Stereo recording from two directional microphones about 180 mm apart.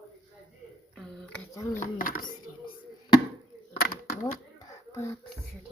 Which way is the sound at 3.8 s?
55° left (ahead or behind).